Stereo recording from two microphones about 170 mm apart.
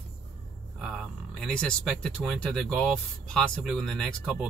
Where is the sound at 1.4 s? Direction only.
5° left (ahead or behind).